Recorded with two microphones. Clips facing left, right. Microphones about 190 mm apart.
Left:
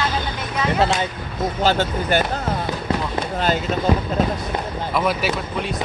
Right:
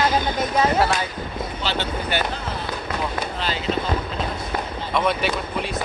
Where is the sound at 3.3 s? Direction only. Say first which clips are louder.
Left 6 dB; 50° left (ahead or behind).